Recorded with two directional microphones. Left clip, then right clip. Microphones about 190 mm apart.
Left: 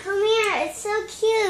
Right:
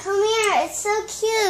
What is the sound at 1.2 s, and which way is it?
Child singing, 50° right (ahead or behind).